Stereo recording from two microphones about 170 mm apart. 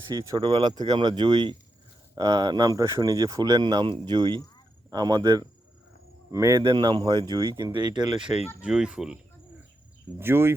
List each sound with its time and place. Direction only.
0.1 s speech: 25° right (ahead or behind)
8.6 s speech: 5° right (ahead or behind)
10.2 s speech: 15° right (ahead or behind)